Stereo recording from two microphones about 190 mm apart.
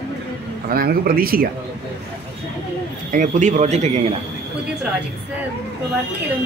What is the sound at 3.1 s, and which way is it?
Speech, 40° right (ahead or behind).